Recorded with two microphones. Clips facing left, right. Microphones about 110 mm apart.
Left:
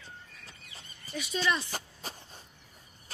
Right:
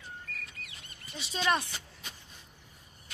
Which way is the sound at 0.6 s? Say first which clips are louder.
Right 2 dB; 70° right (ahead or behind).